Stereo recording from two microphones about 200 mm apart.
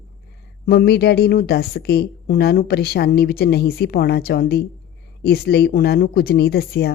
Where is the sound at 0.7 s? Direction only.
50° left (ahead or behind).